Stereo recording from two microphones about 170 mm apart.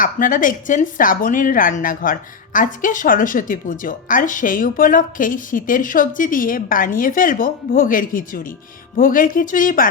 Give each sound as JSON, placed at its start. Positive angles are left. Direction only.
{"t": 0.0, "sound": "speech", "side_deg": 50}